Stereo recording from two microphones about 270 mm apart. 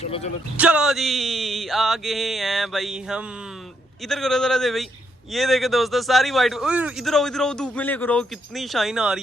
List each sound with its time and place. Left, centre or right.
0.0 s a man's voice: left
0.5 s a man's voice: centre